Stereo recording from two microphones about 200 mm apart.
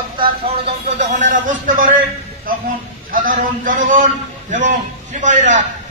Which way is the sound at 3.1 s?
45° right (ahead or behind).